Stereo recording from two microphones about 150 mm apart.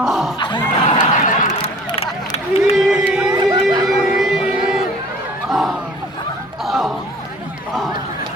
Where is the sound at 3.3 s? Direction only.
25° right (ahead or behind).